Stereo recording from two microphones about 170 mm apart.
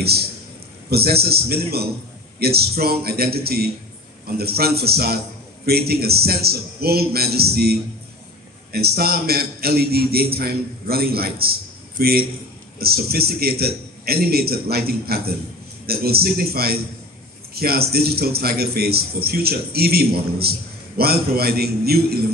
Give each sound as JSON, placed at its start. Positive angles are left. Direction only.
{"t": 0.0, "sound": "a man's voice", "side_deg": -70}